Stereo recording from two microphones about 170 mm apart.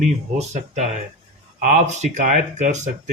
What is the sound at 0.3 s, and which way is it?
Speech, 45° right (ahead or behind).